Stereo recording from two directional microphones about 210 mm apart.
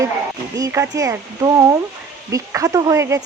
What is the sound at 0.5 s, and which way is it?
Speech, 15° right (ahead or behind).